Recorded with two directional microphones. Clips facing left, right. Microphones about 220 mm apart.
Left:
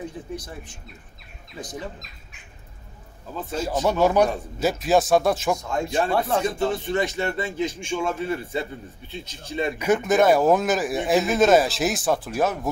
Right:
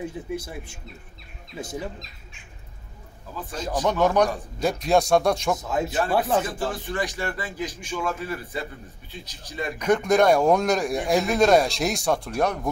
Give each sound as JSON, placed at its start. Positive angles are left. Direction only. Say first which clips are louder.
{"t": 0.0, "sound": "speech", "louder": "right 2 dB", "side_deg": -10}
{"t": 3.8, "sound": "a man's voice", "louder": "left 1 dB", "side_deg": 10}
{"t": 6.4, "sound": "a man's voice", "louder": "left 5 dB", "side_deg": 25}
{"t": 9.8, "sound": "speech", "louder": "right 1 dB", "side_deg": 5}